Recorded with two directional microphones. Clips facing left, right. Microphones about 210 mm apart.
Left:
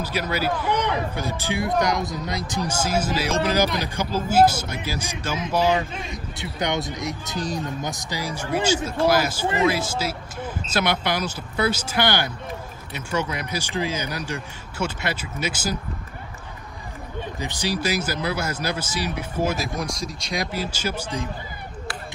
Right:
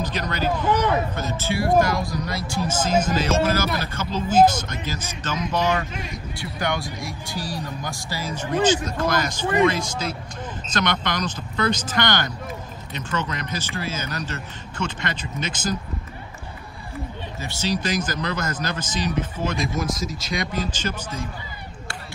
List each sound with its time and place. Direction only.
0.0 s speech: 10° left (ahead or behind)
5.9 s speech: 25° left (ahead or behind)
17.4 s a man's voice: 15° left (ahead or behind)